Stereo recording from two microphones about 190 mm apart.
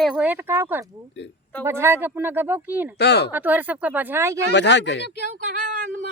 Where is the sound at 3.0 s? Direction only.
60° left (ahead or behind).